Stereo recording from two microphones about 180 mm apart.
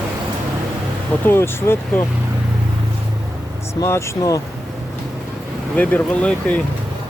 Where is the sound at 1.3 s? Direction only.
15° left (ahead or behind).